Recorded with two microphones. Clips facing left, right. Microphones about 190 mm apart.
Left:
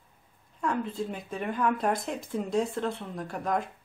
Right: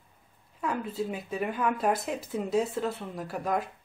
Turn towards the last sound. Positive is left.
turn(degrees=-5)  # may be behind; listen again after turning